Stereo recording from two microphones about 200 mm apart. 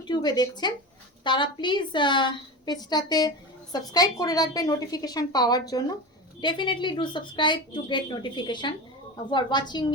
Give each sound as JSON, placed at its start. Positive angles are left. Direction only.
{"t": 0.1, "sound": "a woman's voice", "side_deg": 20}